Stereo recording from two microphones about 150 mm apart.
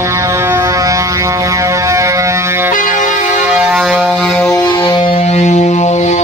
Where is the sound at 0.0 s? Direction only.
20° right (ahead or behind); by 4.4 s centre (ahead or behind).